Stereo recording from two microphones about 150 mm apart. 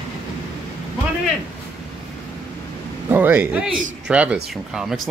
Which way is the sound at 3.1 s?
15° right (ahead or behind).